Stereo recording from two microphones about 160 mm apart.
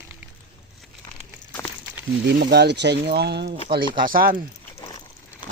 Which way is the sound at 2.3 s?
90° right.